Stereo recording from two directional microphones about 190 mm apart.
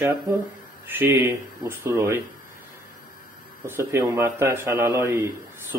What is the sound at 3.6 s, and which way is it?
A man's voice, 15° right (ahead or behind).